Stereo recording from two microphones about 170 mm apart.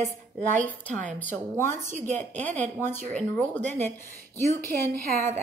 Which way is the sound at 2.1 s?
10° left (ahead or behind).